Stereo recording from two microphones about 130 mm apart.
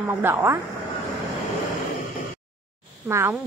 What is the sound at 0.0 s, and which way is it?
Speech, 15° right (ahead or behind).